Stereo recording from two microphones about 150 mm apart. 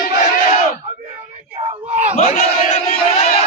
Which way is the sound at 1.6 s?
40° right (ahead or behind).